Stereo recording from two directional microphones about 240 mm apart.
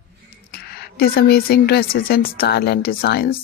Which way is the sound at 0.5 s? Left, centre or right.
Left.